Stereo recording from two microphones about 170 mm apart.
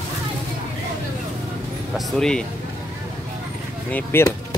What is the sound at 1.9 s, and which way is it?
Speech, 5° left (ahead or behind).